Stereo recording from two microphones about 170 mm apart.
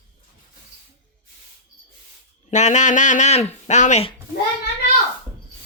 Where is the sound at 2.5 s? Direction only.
45° left (ahead or behind).